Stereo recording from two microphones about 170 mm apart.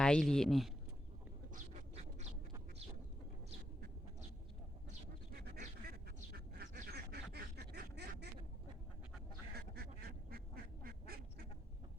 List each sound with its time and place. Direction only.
0.0 s speech: 5° left (ahead or behind)
1.5 s a sound: 45° right (ahead or behind)
5.5 s duck: 65° right (ahead or behind)
9.6 s goose: 65° right (ahead or behind)